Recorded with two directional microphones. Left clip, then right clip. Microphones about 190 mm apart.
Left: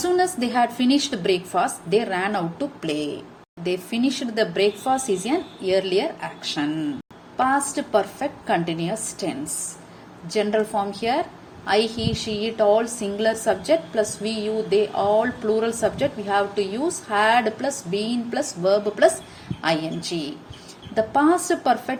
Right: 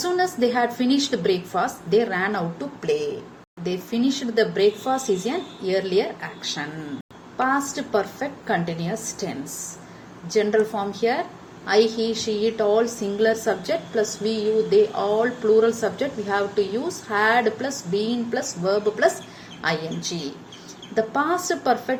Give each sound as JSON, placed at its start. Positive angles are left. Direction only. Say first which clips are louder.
{"t": 0.3, "sound": "a woman's voice", "louder": "even", "side_deg": 40}
{"t": 10.3, "sound": "a woman's voice", "louder": "right 1 dB", "side_deg": 40}
{"t": 20.9, "sound": "a woman's voice", "louder": "left 3 dB", "side_deg": 40}